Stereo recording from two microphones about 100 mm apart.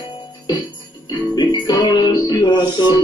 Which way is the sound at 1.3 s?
45° left (ahead or behind).